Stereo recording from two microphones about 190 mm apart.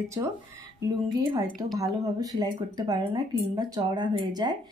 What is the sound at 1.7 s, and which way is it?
Speech, 20° right (ahead or behind).